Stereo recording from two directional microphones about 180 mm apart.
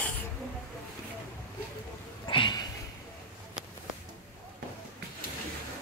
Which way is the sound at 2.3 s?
25° left (ahead or behind).